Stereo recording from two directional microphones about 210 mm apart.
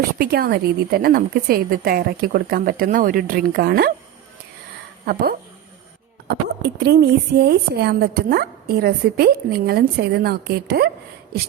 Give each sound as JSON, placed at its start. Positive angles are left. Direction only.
{"t": 0.2, "sound": "a woman's voice", "side_deg": -45}
{"t": 6.2, "sound": "a woman's voice", "side_deg": -50}